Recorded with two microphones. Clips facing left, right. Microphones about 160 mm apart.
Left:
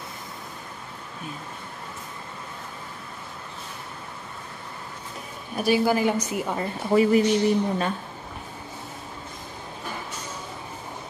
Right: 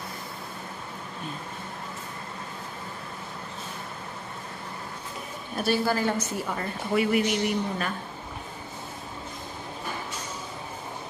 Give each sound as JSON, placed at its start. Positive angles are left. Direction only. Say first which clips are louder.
{"t": 5.6, "sound": "a woman's voice", "louder": "left 4 dB", "side_deg": 15}
{"t": 6.9, "sound": "speech", "louder": "left 5 dB", "side_deg": 35}